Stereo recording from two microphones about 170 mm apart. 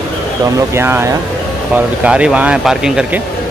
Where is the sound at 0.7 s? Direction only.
15° right (ahead or behind).